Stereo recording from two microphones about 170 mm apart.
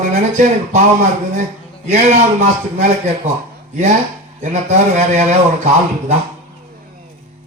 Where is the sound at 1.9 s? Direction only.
40° right (ahead or behind).